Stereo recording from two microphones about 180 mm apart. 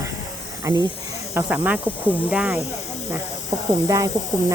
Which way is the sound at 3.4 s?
20° right (ahead or behind).